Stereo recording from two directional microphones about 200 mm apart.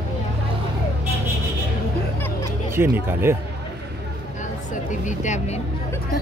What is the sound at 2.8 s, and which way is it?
Speech, 10° right (ahead or behind).